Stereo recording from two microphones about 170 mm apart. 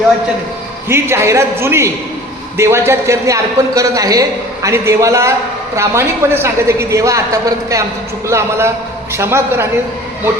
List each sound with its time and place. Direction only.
0.9 s a man's voice: 15° right (ahead or behind)